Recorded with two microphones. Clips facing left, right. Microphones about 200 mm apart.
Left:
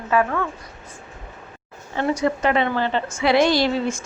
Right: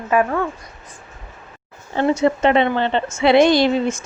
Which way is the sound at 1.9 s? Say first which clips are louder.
Right 4 dB; 25° right (ahead or behind).